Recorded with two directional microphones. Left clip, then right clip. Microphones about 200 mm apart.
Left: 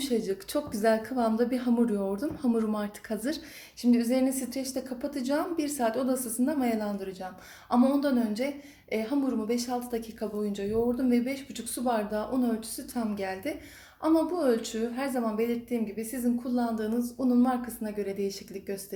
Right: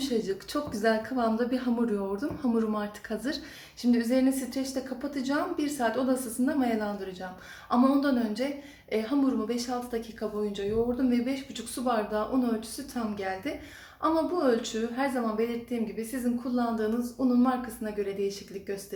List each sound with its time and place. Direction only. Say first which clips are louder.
0.0 s a woman's voice: even; 30° left (ahead or behind)